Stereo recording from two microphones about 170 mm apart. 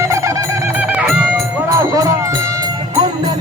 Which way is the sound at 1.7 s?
15° right (ahead or behind).